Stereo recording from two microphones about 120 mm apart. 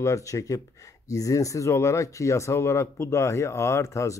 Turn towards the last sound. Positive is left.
turn(degrees=25)  # may be behind; listen again after turning